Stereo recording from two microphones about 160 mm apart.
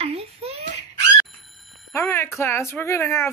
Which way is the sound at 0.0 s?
40° right (ahead or behind).